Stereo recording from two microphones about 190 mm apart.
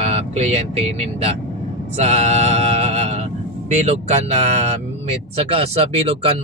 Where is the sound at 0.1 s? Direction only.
35° right (ahead or behind).